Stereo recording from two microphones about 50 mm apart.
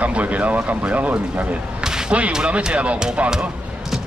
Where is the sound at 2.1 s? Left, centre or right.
Right.